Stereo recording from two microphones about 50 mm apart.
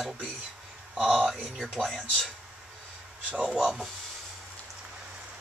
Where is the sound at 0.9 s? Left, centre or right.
Centre.